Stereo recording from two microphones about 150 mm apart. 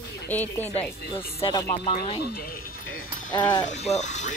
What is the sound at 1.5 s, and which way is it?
Speech, 35° left (ahead or behind).